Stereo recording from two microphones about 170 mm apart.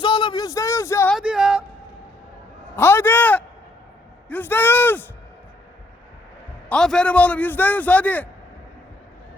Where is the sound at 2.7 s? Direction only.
10° left (ahead or behind).